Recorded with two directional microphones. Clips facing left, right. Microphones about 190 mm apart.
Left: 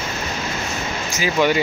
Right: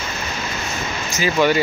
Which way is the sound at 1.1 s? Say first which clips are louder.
Right 1 dB; 10° left (ahead or behind).